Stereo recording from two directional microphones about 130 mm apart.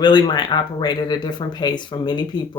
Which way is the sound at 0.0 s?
35° left (ahead or behind).